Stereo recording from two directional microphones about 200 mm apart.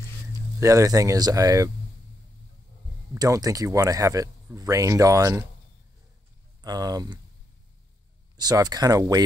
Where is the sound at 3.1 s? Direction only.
15° right (ahead or behind).